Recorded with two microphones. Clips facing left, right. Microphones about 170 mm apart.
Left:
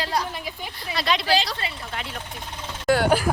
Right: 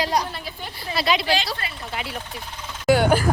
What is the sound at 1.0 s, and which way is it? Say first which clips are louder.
Speech: right 1 dB; 5° right (ahead or behind).